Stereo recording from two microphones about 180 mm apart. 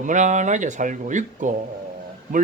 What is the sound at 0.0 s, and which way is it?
Speech, 45° right (ahead or behind).